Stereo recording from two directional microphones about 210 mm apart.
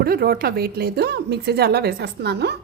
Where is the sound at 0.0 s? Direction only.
45° right (ahead or behind).